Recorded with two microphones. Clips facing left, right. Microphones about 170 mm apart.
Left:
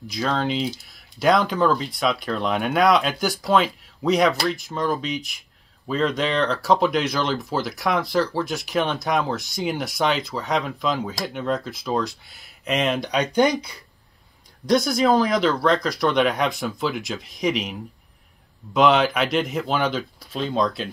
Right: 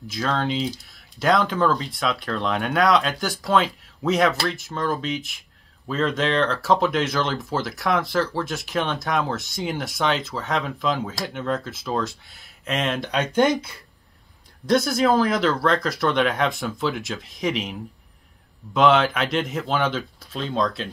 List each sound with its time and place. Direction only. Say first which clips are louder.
0.1 s speech: left 1 dB; centre (ahead or behind)